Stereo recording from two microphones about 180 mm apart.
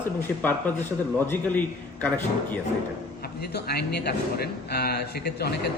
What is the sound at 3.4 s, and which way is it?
Speech, 65° left (ahead or behind).